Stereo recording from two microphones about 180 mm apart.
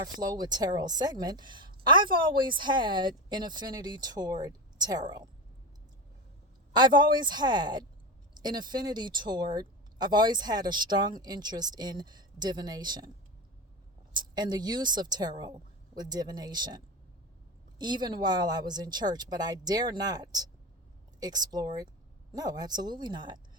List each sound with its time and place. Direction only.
0.0 s speech: 20° right (ahead or behind)
6.7 s speech: 25° right (ahead or behind)
14.1 s a woman's voice: 25° right (ahead or behind)